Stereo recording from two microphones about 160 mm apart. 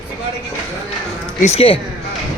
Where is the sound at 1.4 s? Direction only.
40° left (ahead or behind).